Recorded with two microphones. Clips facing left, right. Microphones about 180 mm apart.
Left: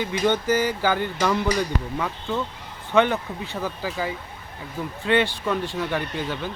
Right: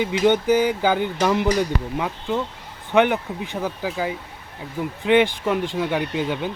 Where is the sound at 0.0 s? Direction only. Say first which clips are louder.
Right 4 dB; 15° right (ahead or behind).